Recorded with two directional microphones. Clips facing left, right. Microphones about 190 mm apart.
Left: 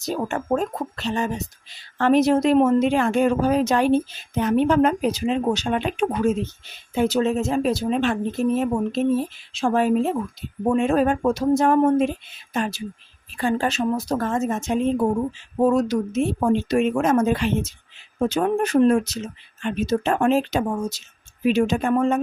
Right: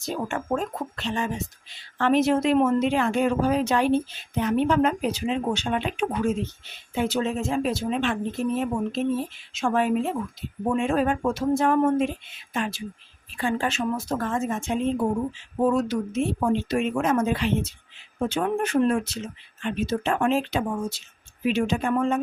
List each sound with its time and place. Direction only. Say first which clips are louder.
0.0 s speech: left 3 dB; 40° left (ahead or behind)